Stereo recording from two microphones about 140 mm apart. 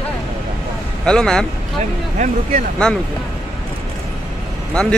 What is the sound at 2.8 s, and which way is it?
Speech, 5° left (ahead or behind).